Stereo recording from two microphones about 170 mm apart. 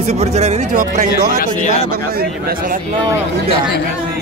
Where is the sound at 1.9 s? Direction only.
60° right (ahead or behind).